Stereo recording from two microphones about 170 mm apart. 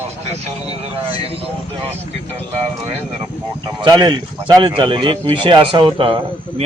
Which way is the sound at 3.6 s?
25° right (ahead or behind).